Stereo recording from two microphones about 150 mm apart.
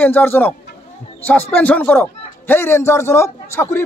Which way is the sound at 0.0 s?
10° left (ahead or behind).